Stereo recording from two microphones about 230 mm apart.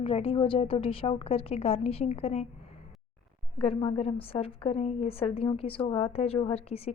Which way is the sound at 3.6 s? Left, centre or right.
Left.